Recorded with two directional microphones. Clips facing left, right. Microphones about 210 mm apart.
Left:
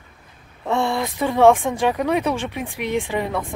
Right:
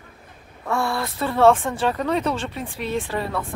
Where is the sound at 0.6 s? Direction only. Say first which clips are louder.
Left 3 dB; 20° left (ahead or behind).